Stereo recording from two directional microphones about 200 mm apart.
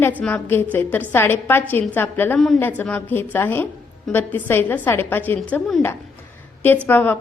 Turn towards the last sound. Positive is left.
turn(degrees=10)  # may be behind; listen again after turning